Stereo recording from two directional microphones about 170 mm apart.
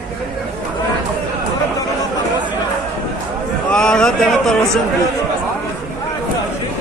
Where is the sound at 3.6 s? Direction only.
5° left (ahead or behind).